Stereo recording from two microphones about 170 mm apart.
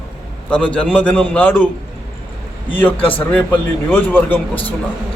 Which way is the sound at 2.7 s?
10° left (ahead or behind).